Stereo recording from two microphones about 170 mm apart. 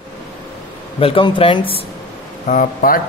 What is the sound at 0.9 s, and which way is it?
Speech, 30° left (ahead or behind).